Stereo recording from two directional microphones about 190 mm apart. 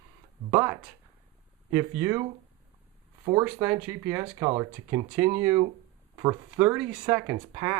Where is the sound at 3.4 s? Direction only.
10° right (ahead or behind).